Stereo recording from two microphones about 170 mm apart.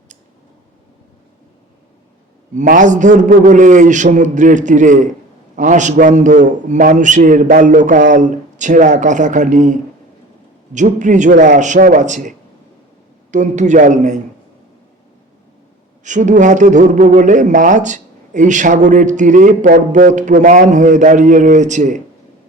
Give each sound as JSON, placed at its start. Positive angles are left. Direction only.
{"t": 2.6, "sound": "speech", "side_deg": -50}
{"t": 10.8, "sound": "speech", "side_deg": -45}
{"t": 13.3, "sound": "speech", "side_deg": -45}
{"t": 16.0, "sound": "speech", "side_deg": -45}